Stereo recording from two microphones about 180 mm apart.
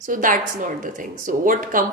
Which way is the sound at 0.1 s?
50° right (ahead or behind).